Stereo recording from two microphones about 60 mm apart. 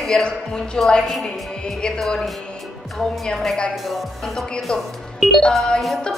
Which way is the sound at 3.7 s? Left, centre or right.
Centre.